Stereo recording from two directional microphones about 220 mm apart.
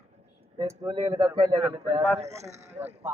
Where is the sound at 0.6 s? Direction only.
20° right (ahead or behind).